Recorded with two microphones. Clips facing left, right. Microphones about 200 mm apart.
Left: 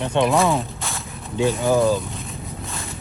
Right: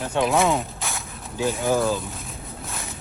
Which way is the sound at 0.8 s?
Centre (ahead or behind).